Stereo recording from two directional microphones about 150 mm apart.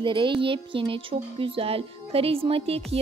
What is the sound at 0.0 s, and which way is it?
Music, 35° right (ahead or behind).